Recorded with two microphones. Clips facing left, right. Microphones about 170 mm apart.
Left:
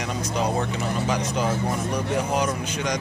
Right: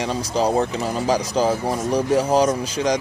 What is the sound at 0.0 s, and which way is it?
A man's voice, 30° right (ahead or behind).